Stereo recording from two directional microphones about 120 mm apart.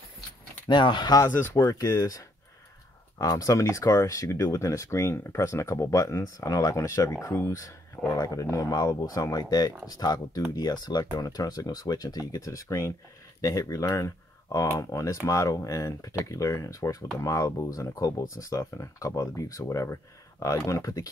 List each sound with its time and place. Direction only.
0.7 s speech: 40° left (ahead or behind)
1.2 s speech: 20° left (ahead or behind)